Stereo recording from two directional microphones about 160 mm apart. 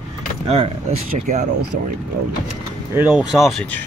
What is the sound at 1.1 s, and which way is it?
Speech, 50° right (ahead or behind).